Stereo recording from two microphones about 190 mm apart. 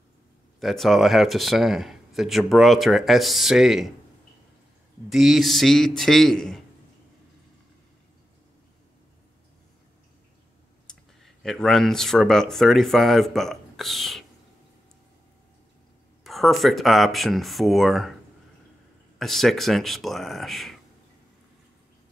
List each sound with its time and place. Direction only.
0.6 s speech: centre (ahead or behind)
5.1 s speech: centre (ahead or behind)
10.9 s speech: centre (ahead or behind)
16.3 s speech: centre (ahead or behind)
19.1 s speech: centre (ahead or behind)